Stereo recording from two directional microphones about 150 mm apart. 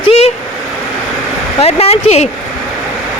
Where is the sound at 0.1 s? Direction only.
40° left (ahead or behind).